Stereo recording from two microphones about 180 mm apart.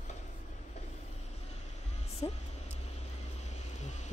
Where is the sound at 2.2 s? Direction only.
25° left (ahead or behind).